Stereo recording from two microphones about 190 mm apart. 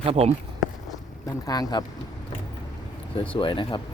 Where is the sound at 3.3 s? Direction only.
25° left (ahead or behind).